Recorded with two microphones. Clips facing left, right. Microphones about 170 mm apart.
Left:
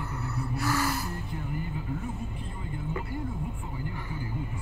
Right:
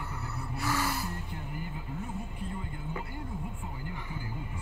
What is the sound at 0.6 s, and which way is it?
Gasp, 15° right (ahead or behind).